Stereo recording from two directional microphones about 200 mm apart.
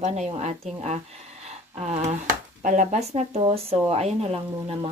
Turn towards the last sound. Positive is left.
turn(degrees=-30)  # may be behind; listen again after turning